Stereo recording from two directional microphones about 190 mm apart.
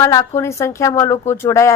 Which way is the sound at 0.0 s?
15° left (ahead or behind).